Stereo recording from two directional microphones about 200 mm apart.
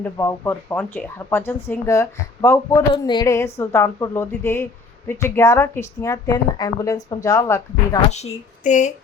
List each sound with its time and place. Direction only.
0.0 s speech: 10° left (ahead or behind)
8.1 s speech: 35° left (ahead or behind)